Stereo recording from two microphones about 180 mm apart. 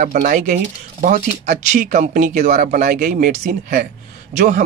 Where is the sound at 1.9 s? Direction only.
45° right (ahead or behind).